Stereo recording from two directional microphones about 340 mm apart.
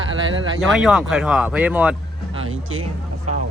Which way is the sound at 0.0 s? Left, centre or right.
Right.